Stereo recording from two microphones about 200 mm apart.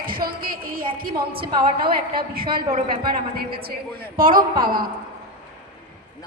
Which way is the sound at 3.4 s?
50° right (ahead or behind).